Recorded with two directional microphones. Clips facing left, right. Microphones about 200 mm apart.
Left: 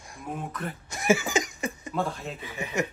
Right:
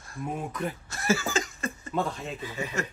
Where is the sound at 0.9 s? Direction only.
15° left (ahead or behind).